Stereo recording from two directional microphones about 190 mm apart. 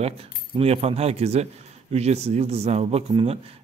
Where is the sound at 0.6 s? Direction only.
30° right (ahead or behind).